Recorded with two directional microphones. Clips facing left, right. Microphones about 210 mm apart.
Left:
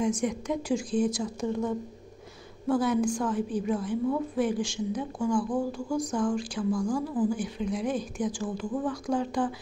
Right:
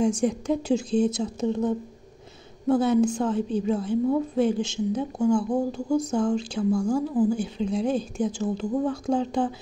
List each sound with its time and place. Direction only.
0.0 s a woman's voice: 30° right (ahead or behind)